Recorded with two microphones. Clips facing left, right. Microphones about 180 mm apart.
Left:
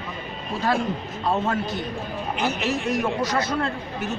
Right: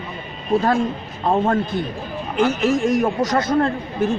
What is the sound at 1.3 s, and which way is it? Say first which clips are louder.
Speech: right 6 dB; 50° right (ahead or behind).